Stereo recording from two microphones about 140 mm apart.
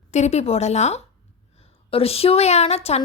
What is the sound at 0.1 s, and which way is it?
A woman's voice, 55° left (ahead or behind).